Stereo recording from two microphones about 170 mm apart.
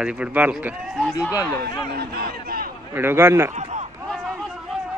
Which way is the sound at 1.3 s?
15° left (ahead or behind).